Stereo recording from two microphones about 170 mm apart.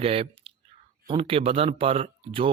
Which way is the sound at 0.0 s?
35° right (ahead or behind).